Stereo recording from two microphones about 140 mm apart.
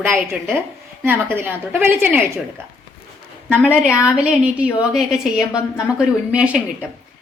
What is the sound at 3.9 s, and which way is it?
A woman's voice, 5° right (ahead or behind).